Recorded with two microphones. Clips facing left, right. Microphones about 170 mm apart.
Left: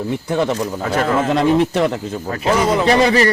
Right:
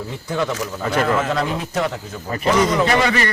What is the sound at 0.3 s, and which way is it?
A man's voice, 25° left (ahead or behind).